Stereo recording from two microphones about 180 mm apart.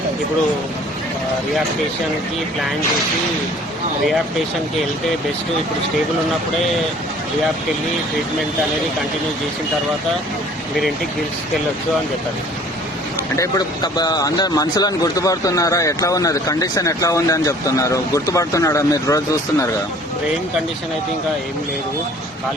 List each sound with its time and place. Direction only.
13.3 s speech: 20° left (ahead or behind)